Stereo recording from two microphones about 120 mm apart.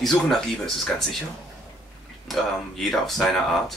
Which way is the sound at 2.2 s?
Centre (ahead or behind).